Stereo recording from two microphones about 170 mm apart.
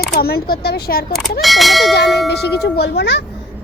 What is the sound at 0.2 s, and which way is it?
Speech, 65° left (ahead or behind).